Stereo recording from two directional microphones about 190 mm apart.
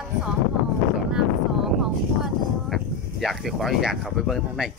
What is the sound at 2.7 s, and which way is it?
Speech, centre (ahead or behind).